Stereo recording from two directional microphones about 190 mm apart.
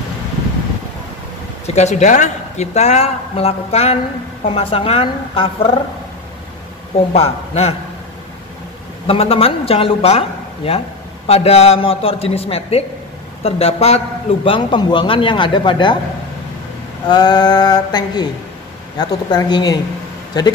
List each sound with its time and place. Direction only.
1.8 s a man's voice: 40° left (ahead or behind)
7.2 s speech: 35° left (ahead or behind)
9.0 s a man's voice: 30° left (ahead or behind)
17.1 s a man's voice: 20° left (ahead or behind)